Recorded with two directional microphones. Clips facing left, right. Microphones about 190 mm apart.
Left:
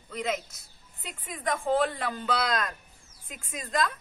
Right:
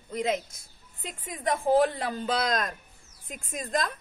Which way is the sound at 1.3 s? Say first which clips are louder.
Right 2 dB; 25° right (ahead or behind).